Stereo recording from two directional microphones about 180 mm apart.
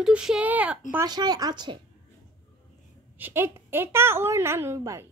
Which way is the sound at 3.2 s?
10° right (ahead or behind).